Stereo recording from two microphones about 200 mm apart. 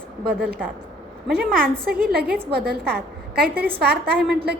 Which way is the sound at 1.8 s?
50° right (ahead or behind).